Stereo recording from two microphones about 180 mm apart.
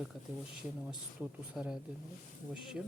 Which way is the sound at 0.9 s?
5° right (ahead or behind).